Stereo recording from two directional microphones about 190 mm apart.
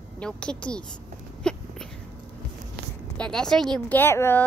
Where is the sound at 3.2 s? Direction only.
5° left (ahead or behind).